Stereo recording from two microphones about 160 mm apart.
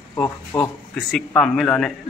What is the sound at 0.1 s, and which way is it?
Speech, 15° left (ahead or behind).